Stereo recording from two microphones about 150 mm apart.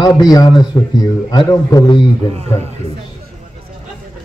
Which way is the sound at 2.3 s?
45° right (ahead or behind).